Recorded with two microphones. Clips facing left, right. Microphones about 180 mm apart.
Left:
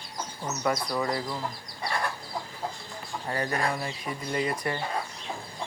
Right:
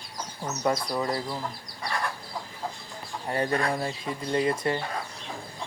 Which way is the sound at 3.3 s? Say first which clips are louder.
Right 3 dB; 30° right (ahead or behind).